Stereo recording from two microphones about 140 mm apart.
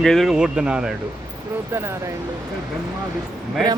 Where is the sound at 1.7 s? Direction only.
20° right (ahead or behind).